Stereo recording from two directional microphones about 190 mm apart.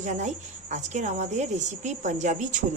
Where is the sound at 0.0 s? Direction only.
40° right (ahead or behind).